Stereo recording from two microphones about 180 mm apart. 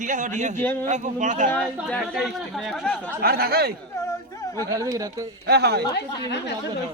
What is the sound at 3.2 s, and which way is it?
Speech, 60° right (ahead or behind).